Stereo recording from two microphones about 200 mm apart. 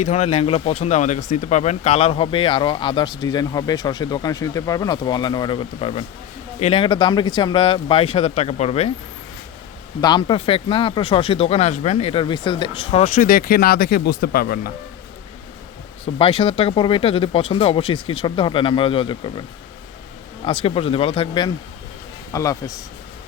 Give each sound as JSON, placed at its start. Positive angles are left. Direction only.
{"t": 0.0, "sound": "speech", "side_deg": 35}
{"t": 10.0, "sound": "speech", "side_deg": 20}
{"t": 16.1, "sound": "a man's voice", "side_deg": 25}